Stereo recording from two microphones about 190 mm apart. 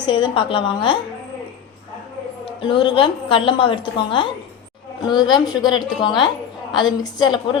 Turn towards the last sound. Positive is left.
turn(degrees=25)  # may be behind; listen again after turning